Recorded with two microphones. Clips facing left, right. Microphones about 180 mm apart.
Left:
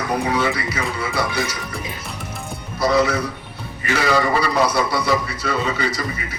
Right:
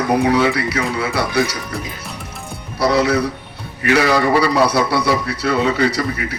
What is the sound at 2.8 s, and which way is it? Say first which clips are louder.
A man's voice: right 2 dB; 65° right (ahead or behind).